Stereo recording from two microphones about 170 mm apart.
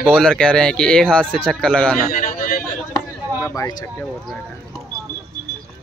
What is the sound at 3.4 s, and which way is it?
Speech, 20° left (ahead or behind).